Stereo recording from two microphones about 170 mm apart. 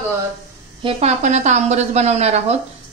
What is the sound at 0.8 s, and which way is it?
A woman's voice, 40° right (ahead or behind).